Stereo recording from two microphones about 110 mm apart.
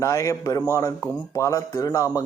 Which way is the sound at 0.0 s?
30° left (ahead or behind).